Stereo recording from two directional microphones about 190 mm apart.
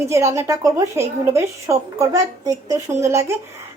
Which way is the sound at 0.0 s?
15° right (ahead or behind).